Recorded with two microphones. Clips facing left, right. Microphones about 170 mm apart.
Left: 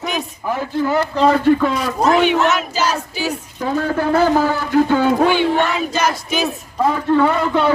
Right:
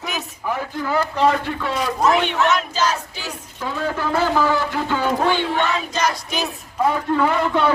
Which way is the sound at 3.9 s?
45° left (ahead or behind).